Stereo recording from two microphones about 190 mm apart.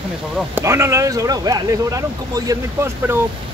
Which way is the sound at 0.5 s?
15° right (ahead or behind).